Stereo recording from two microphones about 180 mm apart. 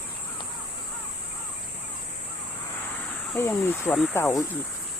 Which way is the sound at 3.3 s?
10° left (ahead or behind).